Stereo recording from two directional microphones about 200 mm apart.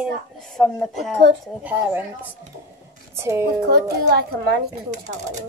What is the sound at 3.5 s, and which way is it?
Speech, 55° right (ahead or behind).